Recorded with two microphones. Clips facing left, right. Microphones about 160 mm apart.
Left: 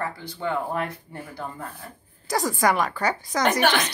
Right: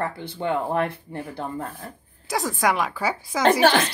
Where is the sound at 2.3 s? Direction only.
Centre (ahead or behind).